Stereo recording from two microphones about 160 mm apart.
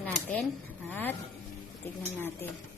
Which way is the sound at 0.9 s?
10° left (ahead or behind).